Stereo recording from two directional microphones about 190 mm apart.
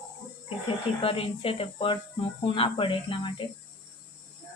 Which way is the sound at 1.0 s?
30° left (ahead or behind).